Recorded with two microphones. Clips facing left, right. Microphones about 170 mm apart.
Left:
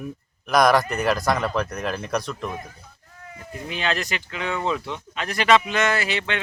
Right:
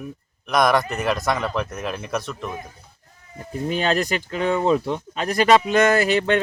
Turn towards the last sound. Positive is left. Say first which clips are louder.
# right 8 dB
turn(degrees=-45)  # may be behind; listen again after turning